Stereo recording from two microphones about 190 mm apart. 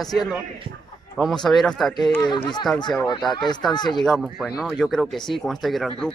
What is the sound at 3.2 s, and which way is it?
Speech, centre (ahead or behind).